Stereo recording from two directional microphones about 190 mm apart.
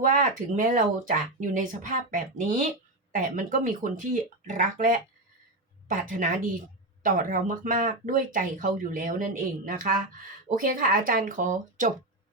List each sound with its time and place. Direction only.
0.0 s speech: 45° right (ahead or behind)